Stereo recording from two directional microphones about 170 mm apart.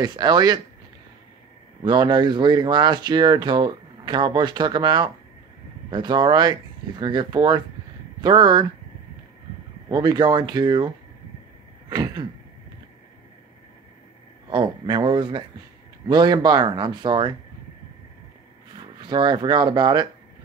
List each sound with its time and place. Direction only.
0.0 s speech: 25° right (ahead or behind)
1.8 s speech: 25° right (ahead or behind)
9.8 s speech: 25° right (ahead or behind)
11.9 s speech: 25° right (ahead or behind)
14.5 s speech: 30° right (ahead or behind)
18.9 s speech: 25° right (ahead or behind)